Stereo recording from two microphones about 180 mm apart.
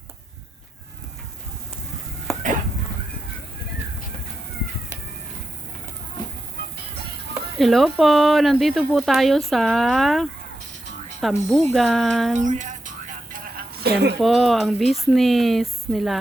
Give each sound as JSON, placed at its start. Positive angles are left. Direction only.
{"t": 7.6, "sound": "speech", "side_deg": 0}
{"t": 12.4, "sound": "music", "side_deg": -45}
{"t": 13.8, "sound": "speech", "side_deg": -65}
{"t": 14.2, "sound": "speech", "side_deg": 0}